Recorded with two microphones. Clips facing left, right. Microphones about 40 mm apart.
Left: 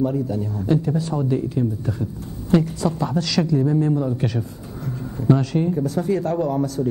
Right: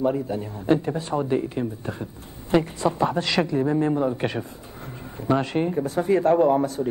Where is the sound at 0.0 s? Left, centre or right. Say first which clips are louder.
Left 2 dB; right.